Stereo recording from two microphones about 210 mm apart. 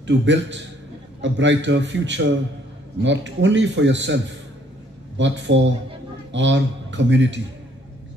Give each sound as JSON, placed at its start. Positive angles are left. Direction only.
{"t": 0.0, "sound": "a man's voice", "side_deg": -60}